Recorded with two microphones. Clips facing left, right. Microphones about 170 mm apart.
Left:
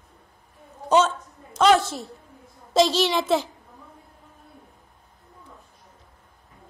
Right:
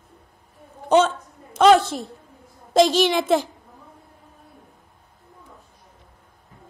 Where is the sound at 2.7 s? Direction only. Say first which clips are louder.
Right 3 dB; 50° right (ahead or behind).